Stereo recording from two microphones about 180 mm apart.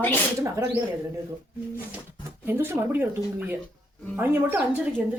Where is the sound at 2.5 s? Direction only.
10° right (ahead or behind).